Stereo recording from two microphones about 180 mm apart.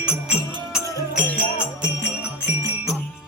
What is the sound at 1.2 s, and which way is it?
Music, 10° left (ahead or behind).